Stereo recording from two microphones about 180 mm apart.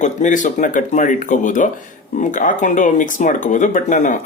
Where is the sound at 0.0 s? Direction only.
45° left (ahead or behind).